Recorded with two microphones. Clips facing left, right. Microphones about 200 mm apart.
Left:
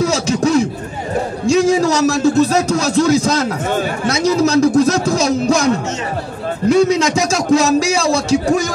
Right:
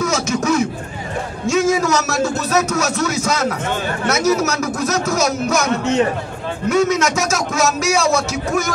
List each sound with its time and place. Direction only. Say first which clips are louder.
0.0 s a sound: left 4 dB; 35° left (ahead or behind)
1.5 s a man's voice: left 3 dB; 35° left (ahead or behind)
6.7 s a man's voice: left 4 dB; 30° left (ahead or behind)